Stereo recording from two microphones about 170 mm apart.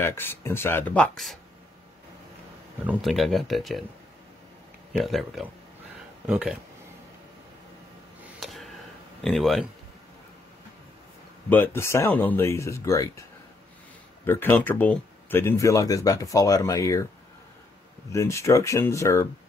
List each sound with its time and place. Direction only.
0.0 s speech: 15° left (ahead or behind)
2.9 s speech: centre (ahead or behind)
4.9 s speech: centre (ahead or behind)
8.4 s a sound: centre (ahead or behind)
9.2 s speech: centre (ahead or behind)
11.4 s speech: 10° left (ahead or behind)
14.2 s speech: 10° left (ahead or behind)
18.1 s speech: 15° left (ahead or behind)